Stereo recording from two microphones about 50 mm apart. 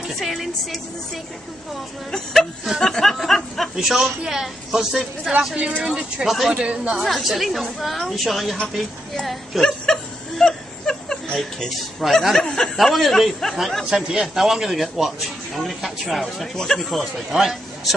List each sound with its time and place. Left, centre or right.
0.2 s speech: centre
2.0 s speech: centre
3.7 s a woman's voice: centre
5.6 s a woman's voice: right
6.2 s speech: centre
6.5 s speech: right
7.0 s speech: centre
9.7 s a sound: centre
12.1 s speech: centre
12.4 s speech: centre
12.6 s speech: centre
13.8 s speech: centre
17.3 s a woman's voice: centre